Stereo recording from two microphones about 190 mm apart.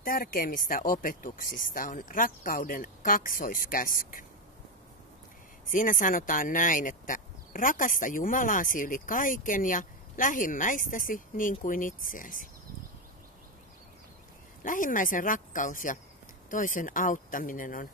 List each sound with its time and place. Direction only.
0.0 s speech: 50° left (ahead or behind)
5.7 s speech: 45° left (ahead or behind)
14.6 s speech: 45° left (ahead or behind)